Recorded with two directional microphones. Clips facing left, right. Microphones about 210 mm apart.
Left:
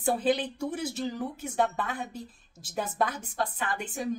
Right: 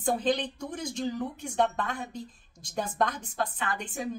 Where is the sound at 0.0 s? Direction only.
5° left (ahead or behind).